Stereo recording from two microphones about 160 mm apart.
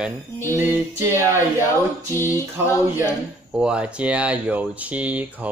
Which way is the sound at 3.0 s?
5° right (ahead or behind).